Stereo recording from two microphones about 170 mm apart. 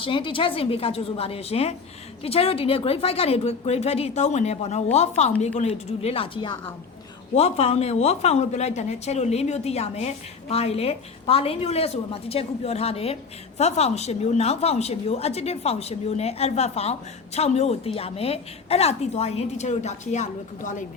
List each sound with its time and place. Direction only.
0.0 s a woman's voice: 30° left (ahead or behind); by 20.8 s 50° left (ahead or behind)